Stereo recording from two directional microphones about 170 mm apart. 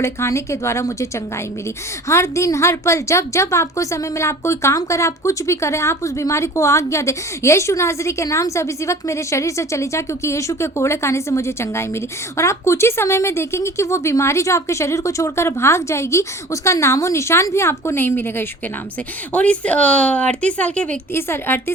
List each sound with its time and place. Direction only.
0.0 s a woman's voice: 15° left (ahead or behind)